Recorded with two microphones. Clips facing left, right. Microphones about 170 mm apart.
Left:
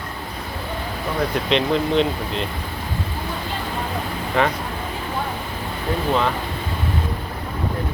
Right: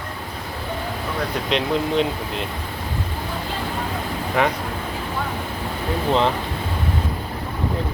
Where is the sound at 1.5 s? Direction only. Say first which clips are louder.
Left 1 dB; 5° right (ahead or behind).